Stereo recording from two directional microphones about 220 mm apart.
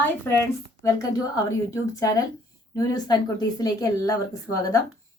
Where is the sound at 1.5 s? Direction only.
15° left (ahead or behind).